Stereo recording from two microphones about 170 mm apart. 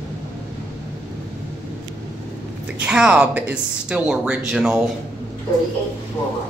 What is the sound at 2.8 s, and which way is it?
Speech, 5° right (ahead or behind).